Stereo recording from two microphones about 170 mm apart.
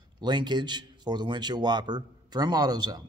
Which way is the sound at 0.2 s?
25° right (ahead or behind).